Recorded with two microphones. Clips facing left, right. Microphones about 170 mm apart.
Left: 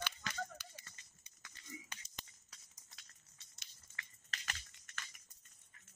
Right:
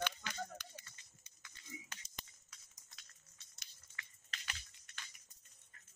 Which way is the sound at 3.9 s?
45° left (ahead or behind).